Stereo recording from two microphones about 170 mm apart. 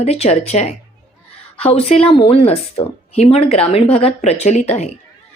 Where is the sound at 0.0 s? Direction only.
40° left (ahead or behind).